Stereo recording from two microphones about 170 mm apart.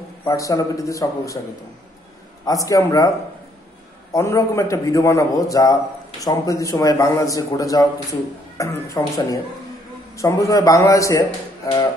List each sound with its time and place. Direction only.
0.2 s a man's voice: 20° left (ahead or behind)
2.4 s a man's voice: 20° left (ahead or behind)
4.1 s a man's voice: 20° left (ahead or behind)